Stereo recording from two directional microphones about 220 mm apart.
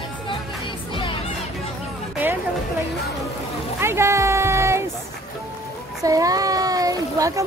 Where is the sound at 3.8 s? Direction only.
10° right (ahead or behind).